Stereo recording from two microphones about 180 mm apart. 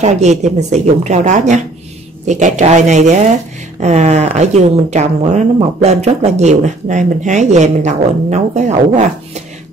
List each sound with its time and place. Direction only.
0.0 s speech: 40° right (ahead or behind)